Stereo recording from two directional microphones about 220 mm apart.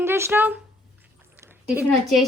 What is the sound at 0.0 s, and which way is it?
A woman's voice, 10° right (ahead or behind).